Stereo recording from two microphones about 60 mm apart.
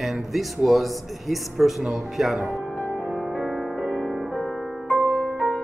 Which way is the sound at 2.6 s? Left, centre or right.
Left.